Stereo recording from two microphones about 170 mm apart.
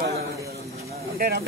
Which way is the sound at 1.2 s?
65° right (ahead or behind).